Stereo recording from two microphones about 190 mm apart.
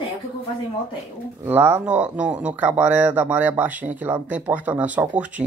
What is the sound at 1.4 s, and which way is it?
Speech, 10° right (ahead or behind).